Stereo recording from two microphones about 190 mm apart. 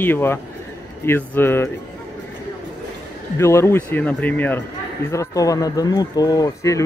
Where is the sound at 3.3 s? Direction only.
15° left (ahead or behind).